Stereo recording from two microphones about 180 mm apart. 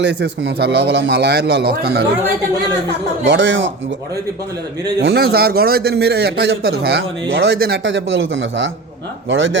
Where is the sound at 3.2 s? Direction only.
85° right.